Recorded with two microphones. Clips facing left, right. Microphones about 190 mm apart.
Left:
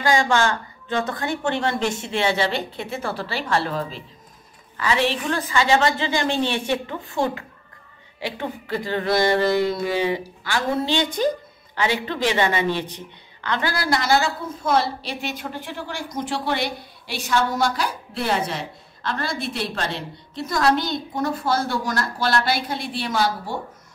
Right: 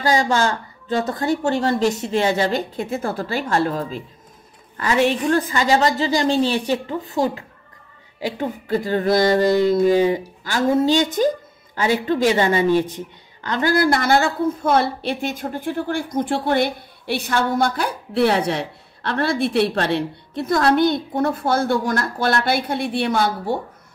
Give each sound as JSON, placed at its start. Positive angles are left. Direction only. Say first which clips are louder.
{"t": 0.0, "sound": "a woman's voice", "louder": "right 1 dB", "side_deg": -40}
{"t": 8.2, "sound": "a sound", "louder": "right 4 dB", "side_deg": -40}
{"t": 11.7, "sound": "speech", "louder": "right 5 dB", "side_deg": -45}